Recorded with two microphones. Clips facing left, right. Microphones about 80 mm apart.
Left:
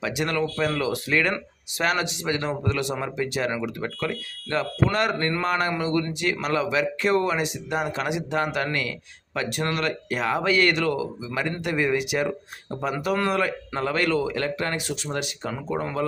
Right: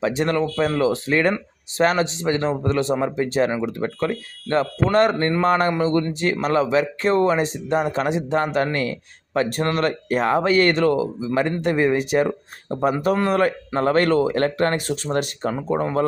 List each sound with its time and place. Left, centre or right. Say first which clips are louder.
0.0 s speech: right 5 dB; right